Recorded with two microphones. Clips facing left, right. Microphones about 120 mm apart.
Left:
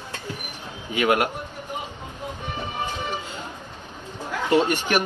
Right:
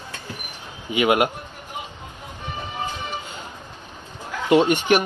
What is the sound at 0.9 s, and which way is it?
Speech, 10° right (ahead or behind).